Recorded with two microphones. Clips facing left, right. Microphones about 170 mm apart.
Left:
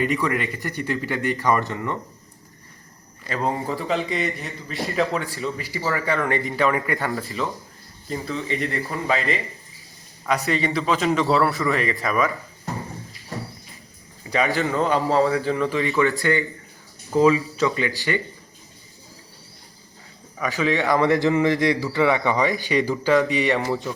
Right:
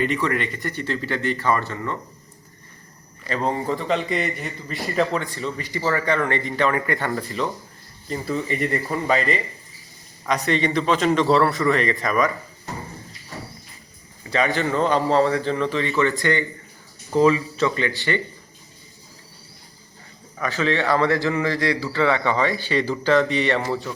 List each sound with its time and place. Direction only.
0.0 s a man's voice: 10° left (ahead or behind)
3.2 s speech: 5° left (ahead or behind)
14.3 s a man's voice: 10° left (ahead or behind)
17.6 s a man's voice: 15° left (ahead or behind)
20.4 s a man's voice: 10° left (ahead or behind)